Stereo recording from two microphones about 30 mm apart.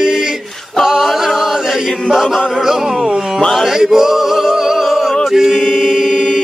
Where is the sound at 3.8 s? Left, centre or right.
Centre.